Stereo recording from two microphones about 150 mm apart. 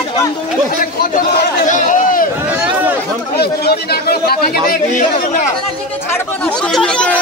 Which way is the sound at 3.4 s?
90° left.